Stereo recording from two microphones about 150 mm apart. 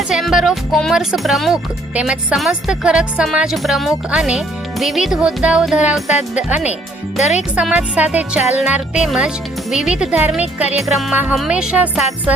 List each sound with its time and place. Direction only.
0.1 s speech: centre (ahead or behind)
7.2 s music: 50° left (ahead or behind)
7.5 s speech: 5° right (ahead or behind)
10.6 s music: 45° left (ahead or behind)
10.8 s speech: centre (ahead or behind)